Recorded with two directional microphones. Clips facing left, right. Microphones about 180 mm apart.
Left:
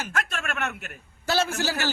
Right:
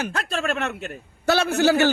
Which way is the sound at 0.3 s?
30° right (ahead or behind).